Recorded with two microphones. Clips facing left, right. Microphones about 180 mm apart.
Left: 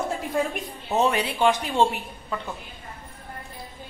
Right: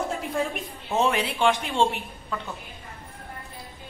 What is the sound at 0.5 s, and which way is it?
A woman's voice, centre (ahead or behind).